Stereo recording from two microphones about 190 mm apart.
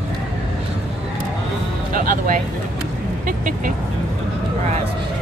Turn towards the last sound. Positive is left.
turn(degrees=-45)  # may be behind; listen again after turning